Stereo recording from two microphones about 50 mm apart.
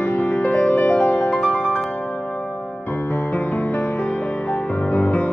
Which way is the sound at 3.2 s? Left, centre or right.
Left.